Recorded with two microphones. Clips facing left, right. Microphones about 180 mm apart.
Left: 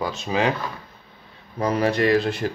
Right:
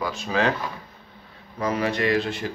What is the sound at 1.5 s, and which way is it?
Speech, 35° left (ahead or behind).